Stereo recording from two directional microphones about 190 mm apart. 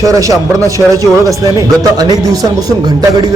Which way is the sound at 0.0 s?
15° right (ahead or behind).